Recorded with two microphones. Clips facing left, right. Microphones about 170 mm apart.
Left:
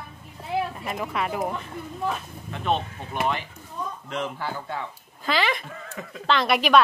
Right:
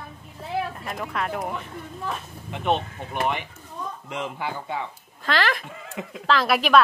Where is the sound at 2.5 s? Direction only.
15° right (ahead or behind).